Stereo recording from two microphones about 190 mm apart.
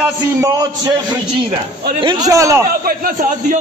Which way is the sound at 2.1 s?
20° right (ahead or behind).